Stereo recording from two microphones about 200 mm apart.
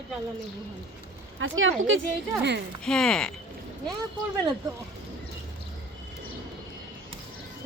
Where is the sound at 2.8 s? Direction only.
5° left (ahead or behind).